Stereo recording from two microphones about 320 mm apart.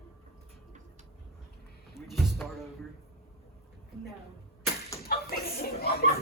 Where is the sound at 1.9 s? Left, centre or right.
Centre.